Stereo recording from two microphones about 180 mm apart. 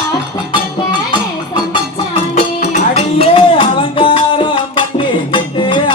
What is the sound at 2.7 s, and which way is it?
Music, 35° left (ahead or behind).